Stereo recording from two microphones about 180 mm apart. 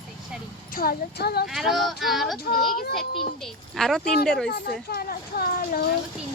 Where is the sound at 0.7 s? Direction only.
60° left (ahead or behind).